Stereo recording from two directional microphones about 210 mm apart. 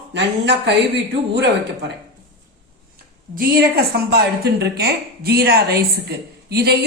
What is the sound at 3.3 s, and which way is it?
A woman's voice, 45° right (ahead or behind).